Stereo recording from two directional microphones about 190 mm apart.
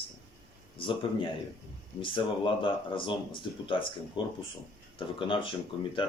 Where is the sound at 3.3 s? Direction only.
25° left (ahead or behind).